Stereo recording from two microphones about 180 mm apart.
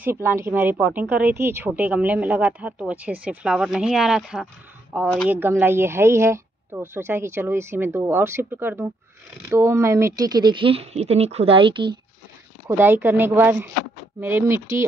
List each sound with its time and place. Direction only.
0.0 s a woman's voice: 15° right (ahead or behind)
12.6 s a woman's voice: 10° right (ahead or behind)